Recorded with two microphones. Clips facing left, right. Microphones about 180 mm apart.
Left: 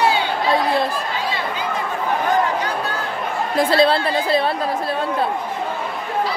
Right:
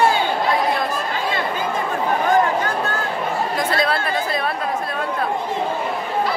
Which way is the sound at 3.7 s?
30° left (ahead or behind).